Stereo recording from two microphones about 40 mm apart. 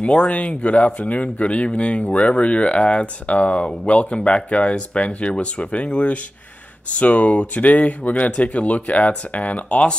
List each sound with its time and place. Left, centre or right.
0.0 s speech: left